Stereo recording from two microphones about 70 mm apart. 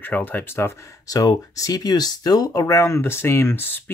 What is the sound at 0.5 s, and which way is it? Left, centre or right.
Speech, left.